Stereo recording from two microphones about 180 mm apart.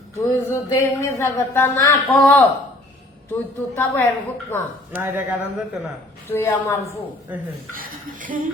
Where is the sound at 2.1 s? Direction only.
5° left (ahead or behind).